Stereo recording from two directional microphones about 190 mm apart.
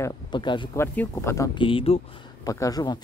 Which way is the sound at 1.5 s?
25° left (ahead or behind).